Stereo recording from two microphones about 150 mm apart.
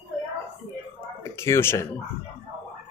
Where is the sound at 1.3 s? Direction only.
15° left (ahead or behind).